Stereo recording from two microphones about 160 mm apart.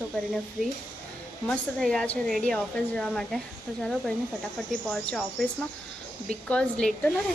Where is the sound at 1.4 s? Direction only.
5° left (ahead or behind).